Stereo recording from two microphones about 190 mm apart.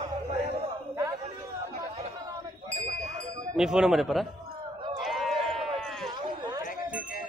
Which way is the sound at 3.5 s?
5° right (ahead or behind).